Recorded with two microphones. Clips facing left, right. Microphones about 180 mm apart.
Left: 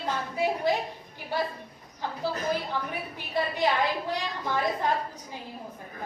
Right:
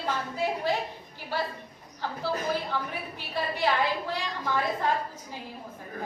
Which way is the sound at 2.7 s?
15° left (ahead or behind).